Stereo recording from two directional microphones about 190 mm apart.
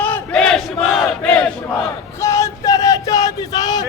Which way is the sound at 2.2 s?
15° left (ahead or behind).